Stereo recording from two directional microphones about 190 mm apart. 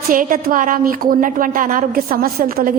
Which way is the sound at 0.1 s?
45° right (ahead or behind).